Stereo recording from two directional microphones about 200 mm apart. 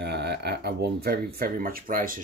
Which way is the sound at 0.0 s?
55° right (ahead or behind).